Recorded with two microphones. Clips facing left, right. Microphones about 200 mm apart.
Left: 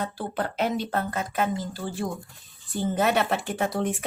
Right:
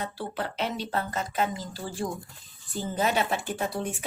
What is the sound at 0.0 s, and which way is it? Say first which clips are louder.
A woman's voice: left 3 dB; 50° left (ahead or behind).